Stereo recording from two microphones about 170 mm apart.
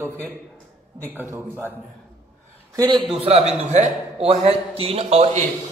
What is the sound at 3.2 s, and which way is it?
A man's voice, 35° right (ahead or behind).